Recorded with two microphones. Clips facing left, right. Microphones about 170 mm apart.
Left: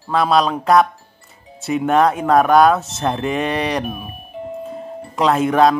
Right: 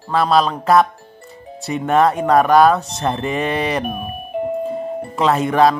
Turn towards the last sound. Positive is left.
turn(degrees=0)  # may be behind; listen again after turning